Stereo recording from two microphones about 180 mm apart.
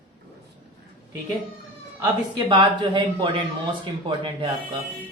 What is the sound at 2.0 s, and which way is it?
Speech, 25° right (ahead or behind).